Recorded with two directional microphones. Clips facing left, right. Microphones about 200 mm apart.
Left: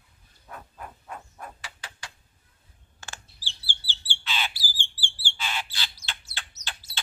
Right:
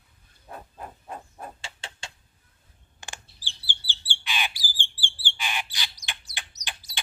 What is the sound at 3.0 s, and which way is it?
Bird, 15° right (ahead or behind).